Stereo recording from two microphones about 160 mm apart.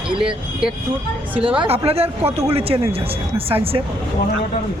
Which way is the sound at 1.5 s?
40° right (ahead or behind).